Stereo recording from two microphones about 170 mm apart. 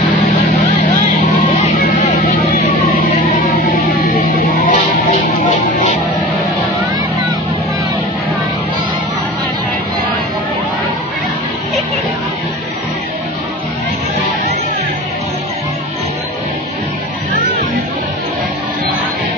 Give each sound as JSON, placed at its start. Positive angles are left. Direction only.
{"t": 1.8, "sound": "vehicle", "side_deg": 55}
{"t": 3.6, "sound": "music", "side_deg": 60}